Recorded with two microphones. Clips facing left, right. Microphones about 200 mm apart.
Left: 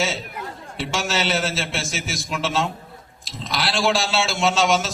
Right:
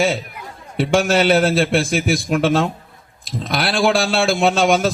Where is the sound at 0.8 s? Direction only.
55° right (ahead or behind).